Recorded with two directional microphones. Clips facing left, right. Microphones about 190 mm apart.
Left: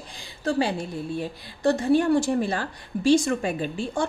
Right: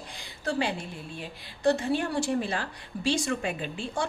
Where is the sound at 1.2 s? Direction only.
45° left (ahead or behind).